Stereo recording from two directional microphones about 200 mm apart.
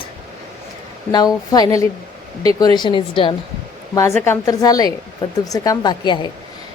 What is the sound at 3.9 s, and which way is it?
A woman's voice, 15° left (ahead or behind).